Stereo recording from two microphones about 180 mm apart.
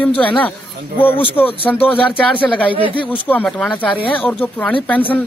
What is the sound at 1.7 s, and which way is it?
Speech, 5° left (ahead or behind).